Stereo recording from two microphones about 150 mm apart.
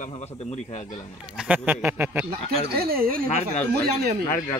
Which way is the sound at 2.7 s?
85° right.